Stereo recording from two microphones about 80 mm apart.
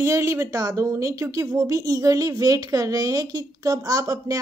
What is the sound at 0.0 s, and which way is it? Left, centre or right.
Speech, right.